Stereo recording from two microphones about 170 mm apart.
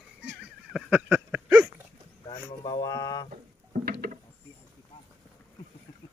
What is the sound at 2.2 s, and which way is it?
Speech, 25° left (ahead or behind).